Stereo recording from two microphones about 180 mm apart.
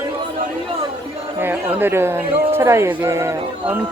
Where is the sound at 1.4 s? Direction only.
10° right (ahead or behind).